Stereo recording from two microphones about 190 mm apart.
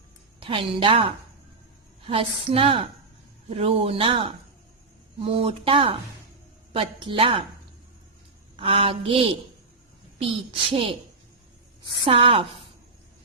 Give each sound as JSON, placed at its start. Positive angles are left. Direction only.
{"t": 0.3, "sound": "a woman's voice", "side_deg": -30}
{"t": 8.5, "sound": "a woman's voice", "side_deg": -30}
{"t": 12.0, "sound": "a woman's voice", "side_deg": -30}